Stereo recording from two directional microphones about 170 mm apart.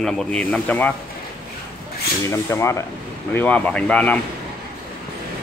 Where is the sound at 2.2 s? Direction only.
15° left (ahead or behind).